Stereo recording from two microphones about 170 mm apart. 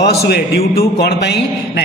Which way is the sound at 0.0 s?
70° left (ahead or behind).